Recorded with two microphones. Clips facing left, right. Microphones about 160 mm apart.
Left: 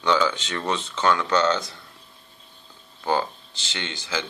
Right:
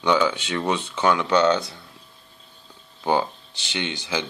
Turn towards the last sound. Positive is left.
turn(degrees=-15)  # may be behind; listen again after turning